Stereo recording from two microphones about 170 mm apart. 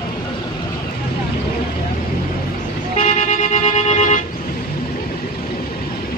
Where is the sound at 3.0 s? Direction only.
50° left (ahead or behind).